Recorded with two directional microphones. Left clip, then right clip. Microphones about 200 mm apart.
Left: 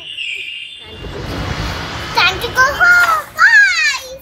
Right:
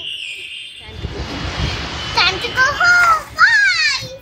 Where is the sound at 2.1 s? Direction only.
15° left (ahead or behind).